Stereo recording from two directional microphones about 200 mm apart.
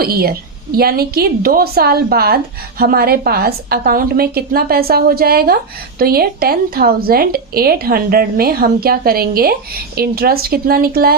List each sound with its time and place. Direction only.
0.0 s speech: 50° right (ahead or behind)